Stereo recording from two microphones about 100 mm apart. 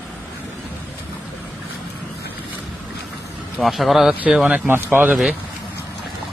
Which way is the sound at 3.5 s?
Centre (ahead or behind).